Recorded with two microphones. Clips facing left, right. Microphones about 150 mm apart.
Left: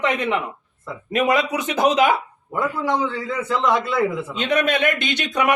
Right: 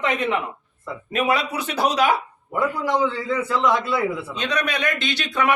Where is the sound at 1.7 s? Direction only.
50° left (ahead or behind).